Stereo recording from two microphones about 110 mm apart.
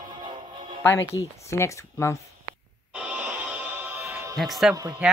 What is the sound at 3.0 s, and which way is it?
Music, 10° right (ahead or behind).